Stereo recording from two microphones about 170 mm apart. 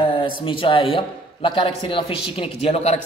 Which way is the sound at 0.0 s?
30° left (ahead or behind).